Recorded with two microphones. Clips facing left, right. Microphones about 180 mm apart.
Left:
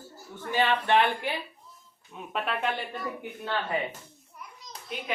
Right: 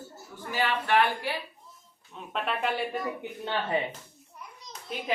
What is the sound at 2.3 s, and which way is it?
Speech, centre (ahead or behind).